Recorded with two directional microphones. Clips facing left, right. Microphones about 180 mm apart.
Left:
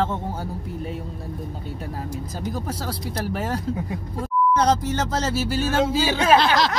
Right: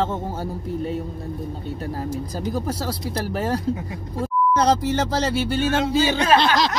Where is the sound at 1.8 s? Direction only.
5° right (ahead or behind).